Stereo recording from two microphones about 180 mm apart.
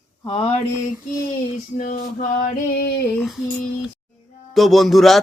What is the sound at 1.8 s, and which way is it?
Male singing, 45° left (ahead or behind).